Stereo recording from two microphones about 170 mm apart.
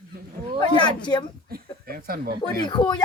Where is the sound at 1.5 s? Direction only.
60° right (ahead or behind).